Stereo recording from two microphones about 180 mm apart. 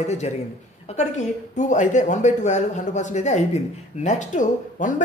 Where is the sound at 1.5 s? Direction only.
40° left (ahead or behind).